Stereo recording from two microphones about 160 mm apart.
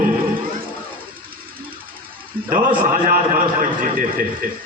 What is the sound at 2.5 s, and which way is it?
A man's voice, 60° right (ahead or behind).